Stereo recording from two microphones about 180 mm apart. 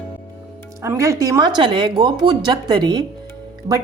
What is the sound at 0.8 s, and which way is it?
A woman's voice, 15° right (ahead or behind).